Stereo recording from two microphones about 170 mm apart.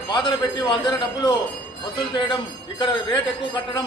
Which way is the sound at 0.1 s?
25° left (ahead or behind).